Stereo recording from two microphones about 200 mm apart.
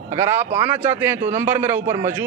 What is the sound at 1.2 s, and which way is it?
Speech, 35° right (ahead or behind).